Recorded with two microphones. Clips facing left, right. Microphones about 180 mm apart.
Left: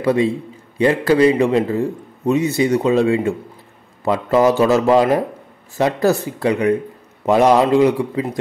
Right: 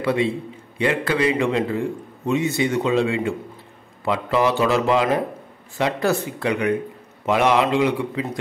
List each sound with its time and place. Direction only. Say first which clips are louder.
0.0 s a man's voice: left 4 dB; 40° left (ahead or behind)